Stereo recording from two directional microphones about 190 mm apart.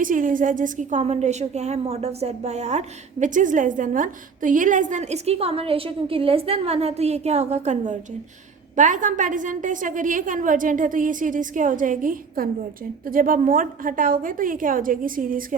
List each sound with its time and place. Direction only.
0.0 s a woman's voice: 45° right (ahead or behind)